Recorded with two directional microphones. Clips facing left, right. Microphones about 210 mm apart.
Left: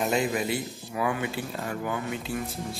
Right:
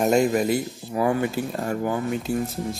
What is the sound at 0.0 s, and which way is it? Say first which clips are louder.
Speech: right 7 dB; 45° right (ahead or behind).